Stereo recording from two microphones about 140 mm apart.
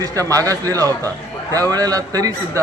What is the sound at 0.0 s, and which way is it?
A man's voice, 25° right (ahead or behind).